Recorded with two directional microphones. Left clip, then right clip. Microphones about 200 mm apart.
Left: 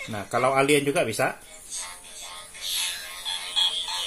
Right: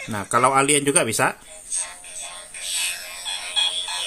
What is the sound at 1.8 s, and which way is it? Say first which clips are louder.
Music: right 4 dB; 30° right (ahead or behind).